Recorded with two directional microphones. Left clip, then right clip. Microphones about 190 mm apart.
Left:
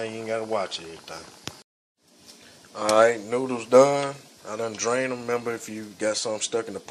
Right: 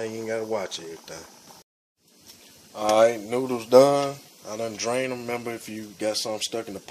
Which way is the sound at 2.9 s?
15° right (ahead or behind).